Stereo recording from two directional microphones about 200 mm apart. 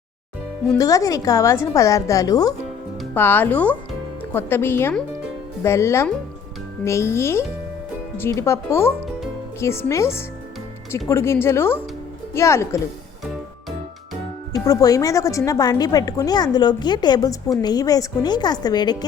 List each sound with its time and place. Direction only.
0.8 s a woman's voice: 15° left (ahead or behind)
14.5 s speech: 15° left (ahead or behind)